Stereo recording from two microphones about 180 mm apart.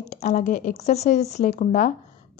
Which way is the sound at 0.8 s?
40° left (ahead or behind).